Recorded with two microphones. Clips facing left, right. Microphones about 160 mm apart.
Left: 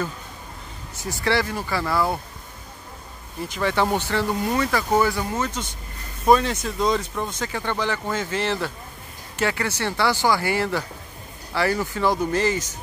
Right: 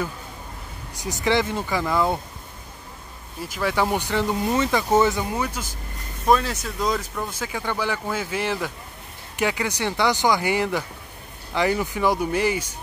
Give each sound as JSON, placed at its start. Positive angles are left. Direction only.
{"t": 0.9, "sound": "speech", "side_deg": -15}
{"t": 3.4, "sound": "speech", "side_deg": -5}